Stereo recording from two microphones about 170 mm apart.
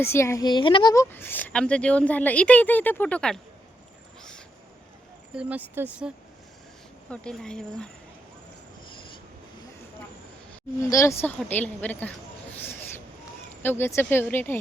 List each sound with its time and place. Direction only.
0.0 s a woman's voice: 15° left (ahead or behind)
1.1 s a woman's voice: 10° left (ahead or behind)
4.2 s a sound: 5° left (ahead or behind)
5.3 s speech: 5° right (ahead or behind)
7.1 s speech: 5° left (ahead or behind)
10.8 s a woman's voice: 15° left (ahead or behind)